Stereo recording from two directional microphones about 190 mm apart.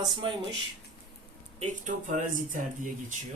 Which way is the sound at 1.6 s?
40° right (ahead or behind).